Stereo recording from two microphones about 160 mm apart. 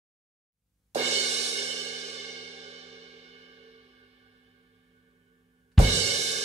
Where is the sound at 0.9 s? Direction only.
45° right (ahead or behind).